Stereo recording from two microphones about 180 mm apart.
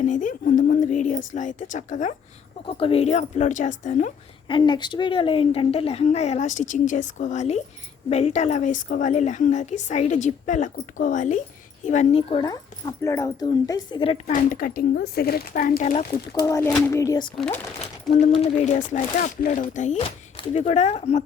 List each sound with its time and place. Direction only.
0.0 s a woman's voice: 45° left (ahead or behind)
2.6 s a woman's voice: 30° left (ahead or behind)
4.4 s a woman's voice: 25° left (ahead or behind)
14.3 s a woman's voice: 50° left (ahead or behind)
16.5 s a sound: 10° left (ahead or behind)
17.3 s speech: 5° left (ahead or behind)
18.4 s a woman's voice: 40° left (ahead or behind)